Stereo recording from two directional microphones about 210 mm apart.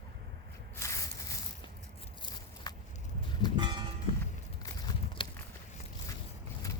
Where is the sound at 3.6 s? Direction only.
20° right (ahead or behind).